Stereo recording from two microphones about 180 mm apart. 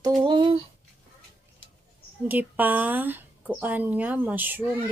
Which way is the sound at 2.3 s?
10° right (ahead or behind).